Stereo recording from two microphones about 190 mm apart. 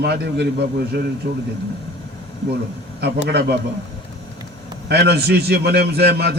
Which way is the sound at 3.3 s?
60° right (ahead or behind).